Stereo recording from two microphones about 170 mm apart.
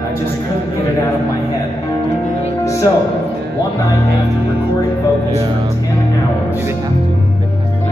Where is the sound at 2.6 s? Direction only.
20° left (ahead or behind).